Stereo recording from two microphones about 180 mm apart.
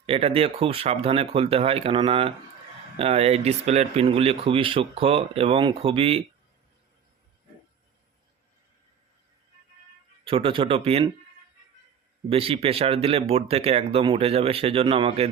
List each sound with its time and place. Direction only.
0.0 s speech: 30° right (ahead or behind)
10.2 s speech: 30° right (ahead or behind)
12.3 s speech: 30° right (ahead or behind)